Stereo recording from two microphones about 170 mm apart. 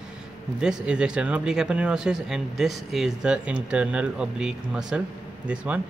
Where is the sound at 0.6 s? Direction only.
5° right (ahead or behind).